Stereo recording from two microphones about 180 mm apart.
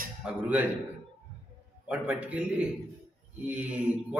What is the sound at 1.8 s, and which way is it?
Speech, 5° right (ahead or behind).